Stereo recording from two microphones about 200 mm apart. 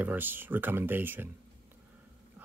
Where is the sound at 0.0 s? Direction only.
10° right (ahead or behind).